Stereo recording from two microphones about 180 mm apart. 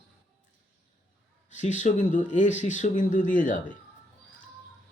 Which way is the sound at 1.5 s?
45° left (ahead or behind).